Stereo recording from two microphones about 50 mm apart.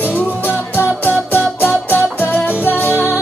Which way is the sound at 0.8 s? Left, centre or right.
Left.